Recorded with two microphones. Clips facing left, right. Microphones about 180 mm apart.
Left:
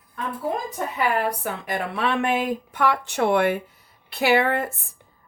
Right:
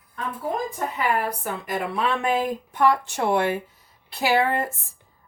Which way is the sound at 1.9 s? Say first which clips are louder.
Left 1 dB; 70° left (ahead or behind).